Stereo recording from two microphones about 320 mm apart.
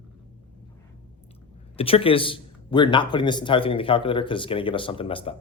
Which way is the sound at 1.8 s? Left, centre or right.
Centre.